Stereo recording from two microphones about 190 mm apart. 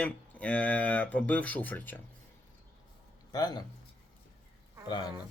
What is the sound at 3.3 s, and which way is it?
Speech, 20° left (ahead or behind).